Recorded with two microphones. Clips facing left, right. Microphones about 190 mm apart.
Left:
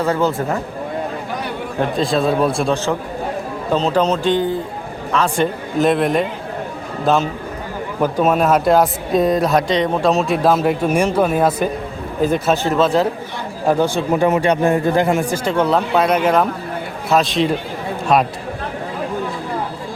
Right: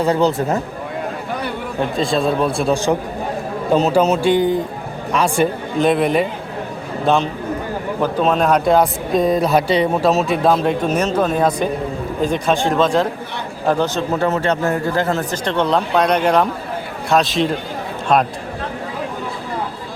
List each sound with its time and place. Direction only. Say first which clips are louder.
0.0 s speech: right 2 dB; 15° right (ahead or behind)
2.0 s speech: left 1 dB; centre (ahead or behind)
3.8 s a man's voice: right 2 dB; 10° right (ahead or behind)
5.8 s a man's voice: even; centre (ahead or behind)